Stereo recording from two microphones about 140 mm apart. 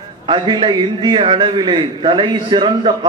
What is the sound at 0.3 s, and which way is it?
A man's voice, 35° right (ahead or behind).